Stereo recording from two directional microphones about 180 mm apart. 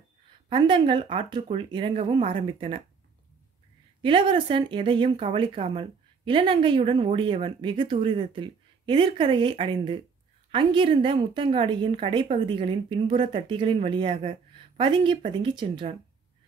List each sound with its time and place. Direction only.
0.5 s speech: 25° right (ahead or behind)
4.0 s speech: 30° right (ahead or behind)